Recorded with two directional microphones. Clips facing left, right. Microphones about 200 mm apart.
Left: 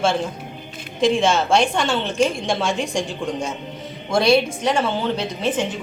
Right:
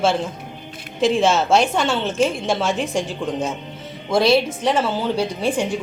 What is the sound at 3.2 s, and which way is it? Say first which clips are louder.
Speech: right 2 dB; 10° left (ahead or behind).